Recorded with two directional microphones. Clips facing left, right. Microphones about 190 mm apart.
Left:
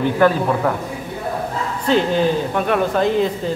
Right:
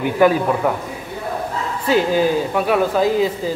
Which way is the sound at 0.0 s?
10° right (ahead or behind).